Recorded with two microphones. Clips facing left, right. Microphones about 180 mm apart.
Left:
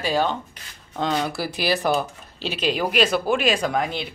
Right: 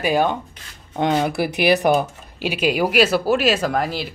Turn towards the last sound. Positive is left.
turn(degrees=-5)  # may be behind; listen again after turning